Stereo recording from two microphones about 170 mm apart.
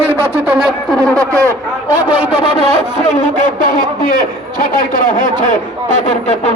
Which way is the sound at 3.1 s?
55° left (ahead or behind).